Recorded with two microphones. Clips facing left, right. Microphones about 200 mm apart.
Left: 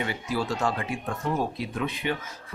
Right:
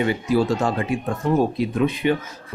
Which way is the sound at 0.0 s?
20° right (ahead or behind).